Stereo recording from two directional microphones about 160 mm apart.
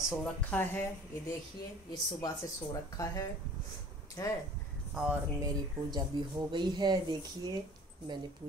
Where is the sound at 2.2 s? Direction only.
20° left (ahead or behind).